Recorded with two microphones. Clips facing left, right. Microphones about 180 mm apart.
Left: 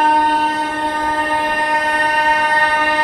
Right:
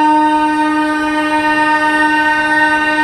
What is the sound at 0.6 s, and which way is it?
Train, 75° right (ahead or behind).